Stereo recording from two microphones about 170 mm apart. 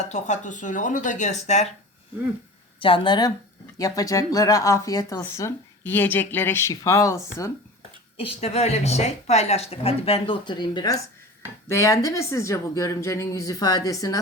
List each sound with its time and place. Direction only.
0.1 s speech: 45° left (ahead or behind)
2.8 s speech: 30° left (ahead or behind)
8.2 s speech: 40° left (ahead or behind); by 14.2 s 20° left (ahead or behind)